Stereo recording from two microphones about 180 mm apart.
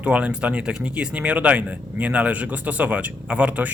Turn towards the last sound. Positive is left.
turn(degrees=-10)  # may be behind; listen again after turning